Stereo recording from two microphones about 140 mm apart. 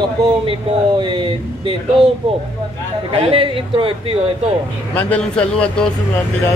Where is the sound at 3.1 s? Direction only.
40° right (ahead or behind).